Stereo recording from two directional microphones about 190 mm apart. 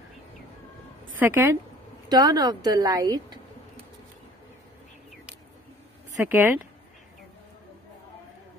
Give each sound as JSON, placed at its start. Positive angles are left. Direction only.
{"t": 1.2, "sound": "speech", "side_deg": -15}
{"t": 6.2, "sound": "speech", "side_deg": -10}